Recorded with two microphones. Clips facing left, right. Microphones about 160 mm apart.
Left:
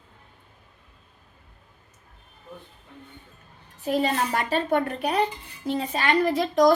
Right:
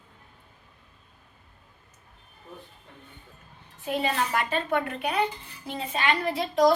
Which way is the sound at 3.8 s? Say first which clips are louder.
Left 3 dB; 35° left (ahead or behind).